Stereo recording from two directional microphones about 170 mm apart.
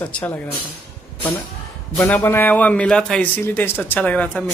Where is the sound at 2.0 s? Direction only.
10° left (ahead or behind).